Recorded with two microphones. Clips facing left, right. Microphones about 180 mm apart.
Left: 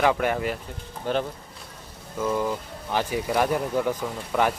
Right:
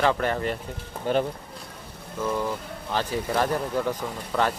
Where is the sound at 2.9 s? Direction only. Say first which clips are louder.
Left 1 dB; 15° left (ahead or behind).